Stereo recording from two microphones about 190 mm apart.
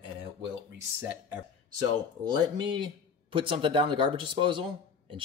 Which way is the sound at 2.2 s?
20° right (ahead or behind).